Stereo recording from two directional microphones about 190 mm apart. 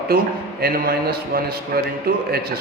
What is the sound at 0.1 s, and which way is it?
A man's voice, 50° right (ahead or behind).